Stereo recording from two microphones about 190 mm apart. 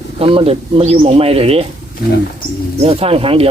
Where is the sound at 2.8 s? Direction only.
30° right (ahead or behind).